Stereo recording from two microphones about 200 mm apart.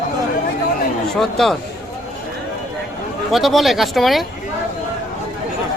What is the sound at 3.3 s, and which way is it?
Speech, centre (ahead or behind).